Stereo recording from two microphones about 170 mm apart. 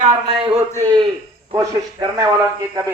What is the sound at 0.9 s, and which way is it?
A man's voice, 30° right (ahead or behind).